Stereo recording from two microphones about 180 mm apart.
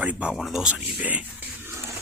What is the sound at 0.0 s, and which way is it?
Speech, 5° right (ahead or behind).